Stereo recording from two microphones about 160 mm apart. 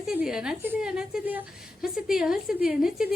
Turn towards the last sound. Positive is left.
turn(degrees=-5)  # may be behind; listen again after turning